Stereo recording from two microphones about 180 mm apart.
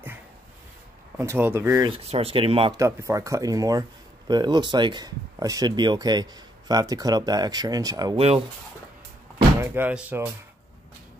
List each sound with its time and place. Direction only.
1.1 s speech: 15° right (ahead or behind)
1.9 s speech: 35° right (ahead or behind)
2.8 s speech: 15° right (ahead or behind)
9.6 s speech: 10° right (ahead or behind)